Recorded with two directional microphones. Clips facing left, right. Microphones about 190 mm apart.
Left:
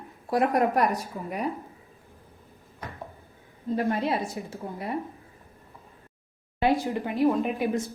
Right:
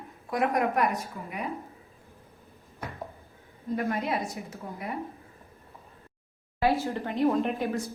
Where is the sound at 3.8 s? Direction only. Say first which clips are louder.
Left 3 dB; 30° left (ahead or behind).